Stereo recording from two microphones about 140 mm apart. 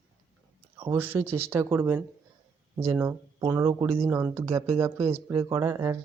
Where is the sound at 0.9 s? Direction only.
15° right (ahead or behind).